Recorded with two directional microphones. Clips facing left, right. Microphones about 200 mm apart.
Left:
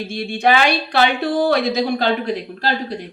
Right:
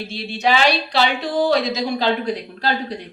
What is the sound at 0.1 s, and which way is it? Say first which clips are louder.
A woman's voice: left 3 dB; 50° left (ahead or behind).